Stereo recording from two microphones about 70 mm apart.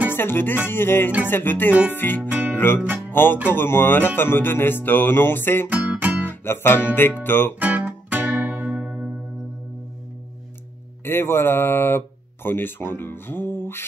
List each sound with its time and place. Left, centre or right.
0.1 s music: left
2.2 s music: right
3.1 s music: left
5.7 s music: right
6.2 s guitar: left
7.0 s music: left
7.5 s music: right
11.1 s music: left